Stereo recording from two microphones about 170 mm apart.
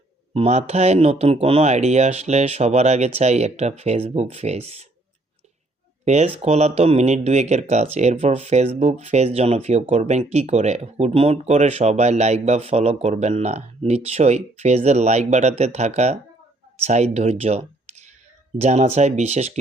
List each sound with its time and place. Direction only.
0.3 s speech: 40° right (ahead or behind)
6.1 s speech: 40° right (ahead or behind)